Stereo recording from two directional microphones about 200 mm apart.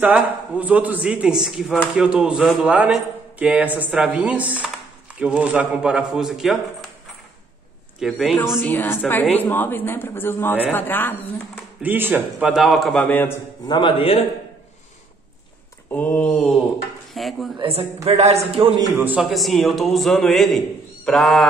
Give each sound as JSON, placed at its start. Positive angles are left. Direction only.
{"t": 0.0, "sound": "a man's voice", "side_deg": -5}
{"t": 8.0, "sound": "a man's voice", "side_deg": 0}
{"t": 8.6, "sound": "a woman's voice", "side_deg": 10}
{"t": 11.8, "sound": "a man's voice", "side_deg": -10}
{"t": 13.7, "sound": "a man's voice", "side_deg": 25}
{"t": 15.9, "sound": "a woman's voice", "side_deg": 5}
{"t": 17.6, "sound": "a man's voice", "side_deg": -30}
{"t": 18.8, "sound": "a man's voice", "side_deg": -10}